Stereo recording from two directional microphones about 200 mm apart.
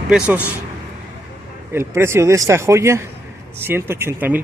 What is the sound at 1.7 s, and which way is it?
Speech, 15° right (ahead or behind).